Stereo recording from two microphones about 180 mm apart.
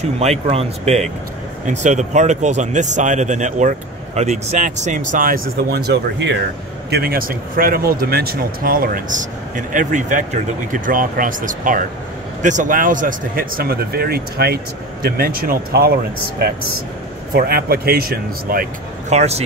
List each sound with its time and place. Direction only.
0.2 s speech: 35° right (ahead or behind); by 6.3 s 70° right (ahead or behind)
6.9 s a man's voice: 55° right (ahead or behind); by 19.4 s 35° right (ahead or behind)